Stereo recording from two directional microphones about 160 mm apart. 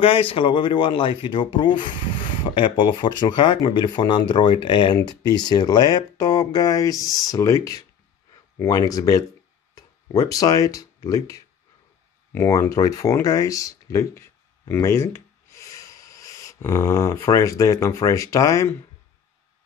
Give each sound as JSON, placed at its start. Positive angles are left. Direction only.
{"t": 0.0, "sound": "speech", "side_deg": 35}
{"t": 7.0, "sound": "speech", "side_deg": 0}
{"t": 7.2, "sound": "speech", "side_deg": 20}